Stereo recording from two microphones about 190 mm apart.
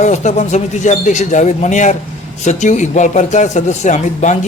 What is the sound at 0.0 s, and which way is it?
A man's voice, 40° left (ahead or behind).